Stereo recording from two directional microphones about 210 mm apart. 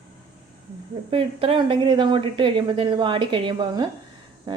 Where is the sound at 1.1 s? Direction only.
25° right (ahead or behind).